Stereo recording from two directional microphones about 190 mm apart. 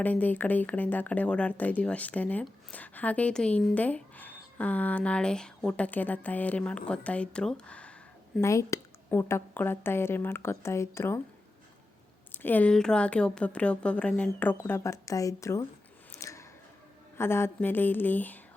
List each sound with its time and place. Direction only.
0.0 s speech: 10° left (ahead or behind)
12.3 s speech: 10° left (ahead or behind)
16.1 s a sound: 15° left (ahead or behind)
17.2 s speech: 15° left (ahead or behind)